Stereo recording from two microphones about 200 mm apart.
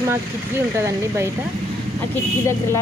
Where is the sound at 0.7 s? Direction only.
15° right (ahead or behind).